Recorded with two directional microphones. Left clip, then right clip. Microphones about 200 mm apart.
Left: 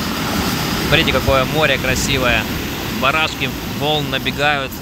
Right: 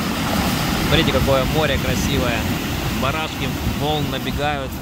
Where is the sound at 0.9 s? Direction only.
Centre (ahead or behind).